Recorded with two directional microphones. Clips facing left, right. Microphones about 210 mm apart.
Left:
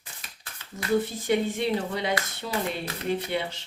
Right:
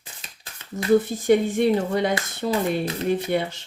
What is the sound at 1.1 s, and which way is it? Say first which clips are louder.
Speech: right 6 dB; 50° right (ahead or behind).